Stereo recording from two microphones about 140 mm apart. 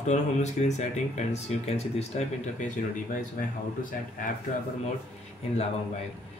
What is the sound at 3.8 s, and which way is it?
Speech, 75° left (ahead or behind).